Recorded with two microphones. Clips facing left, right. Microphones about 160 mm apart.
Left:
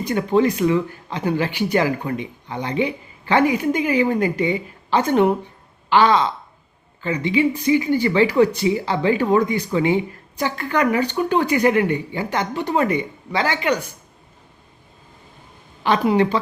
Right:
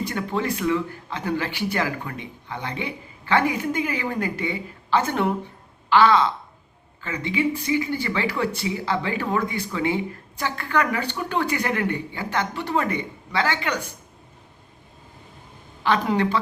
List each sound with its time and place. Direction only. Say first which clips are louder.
0.0 s speech: left 8 dB; 20° left (ahead or behind)
15.8 s speech: left 4 dB; 15° left (ahead or behind)